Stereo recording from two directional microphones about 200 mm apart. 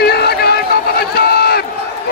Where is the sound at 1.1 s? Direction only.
50° left (ahead or behind).